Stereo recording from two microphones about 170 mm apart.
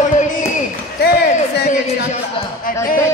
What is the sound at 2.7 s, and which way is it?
Speech, 55° left (ahead or behind).